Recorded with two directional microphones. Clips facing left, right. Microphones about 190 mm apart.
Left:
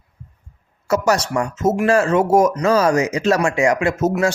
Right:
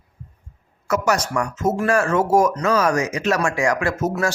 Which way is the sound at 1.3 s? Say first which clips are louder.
Left 3 dB; 25° left (ahead or behind).